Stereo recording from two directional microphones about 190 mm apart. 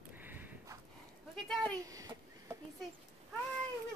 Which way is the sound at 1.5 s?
5° left (ahead or behind).